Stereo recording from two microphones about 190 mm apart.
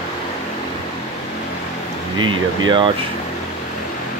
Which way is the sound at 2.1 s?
25° right (ahead or behind).